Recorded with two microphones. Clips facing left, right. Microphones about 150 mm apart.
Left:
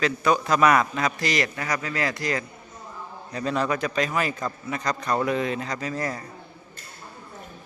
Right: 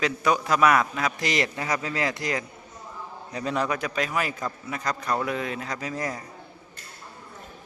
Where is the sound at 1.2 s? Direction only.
20° right (ahead or behind).